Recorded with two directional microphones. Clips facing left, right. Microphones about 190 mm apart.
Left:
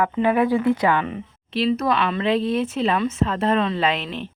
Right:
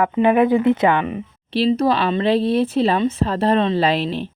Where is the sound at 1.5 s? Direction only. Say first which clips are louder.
Right 4 dB; 30° right (ahead or behind).